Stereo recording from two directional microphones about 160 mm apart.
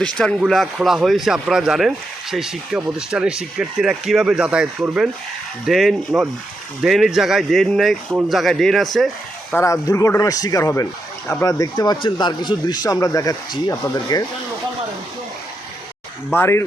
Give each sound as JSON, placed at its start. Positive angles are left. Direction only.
{"t": 0.0, "sound": "speech", "side_deg": 5}
{"t": 9.6, "sound": "speech", "side_deg": 15}
{"t": 16.3, "sound": "speech", "side_deg": 15}